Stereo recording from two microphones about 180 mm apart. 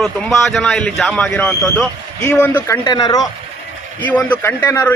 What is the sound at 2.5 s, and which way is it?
Speech, 25° left (ahead or behind).